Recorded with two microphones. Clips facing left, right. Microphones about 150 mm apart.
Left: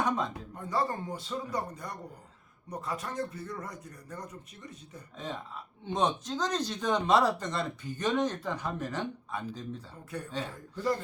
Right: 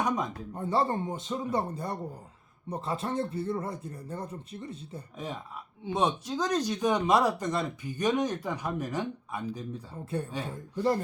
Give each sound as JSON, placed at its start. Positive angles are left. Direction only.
{"t": 0.5, "sound": "a man's voice", "side_deg": -30}
{"t": 5.1, "sound": "speech", "side_deg": -10}
{"t": 10.4, "sound": "a man's voice", "side_deg": -30}